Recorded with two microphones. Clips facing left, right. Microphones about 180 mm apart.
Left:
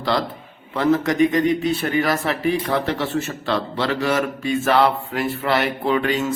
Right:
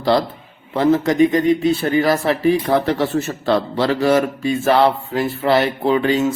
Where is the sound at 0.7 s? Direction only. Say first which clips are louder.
Right 3 dB; 30° right (ahead or behind).